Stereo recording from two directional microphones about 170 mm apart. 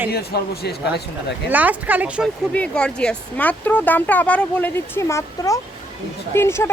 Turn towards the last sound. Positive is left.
turn(degrees=15)  # may be behind; listen again after turning